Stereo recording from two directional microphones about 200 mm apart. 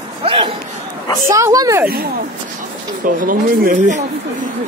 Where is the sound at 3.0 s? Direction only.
45° right (ahead or behind).